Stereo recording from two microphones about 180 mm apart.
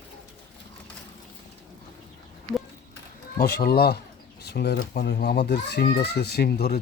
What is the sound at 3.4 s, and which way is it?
Speech, 60° left (ahead or behind).